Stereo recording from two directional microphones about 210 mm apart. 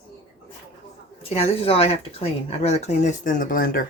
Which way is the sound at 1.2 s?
30° left (ahead or behind).